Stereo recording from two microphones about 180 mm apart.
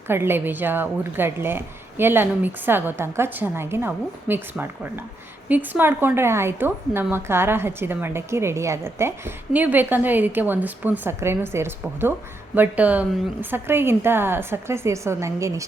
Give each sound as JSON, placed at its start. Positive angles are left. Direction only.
{"t": 0.1, "sound": "a woman's voice", "side_deg": -10}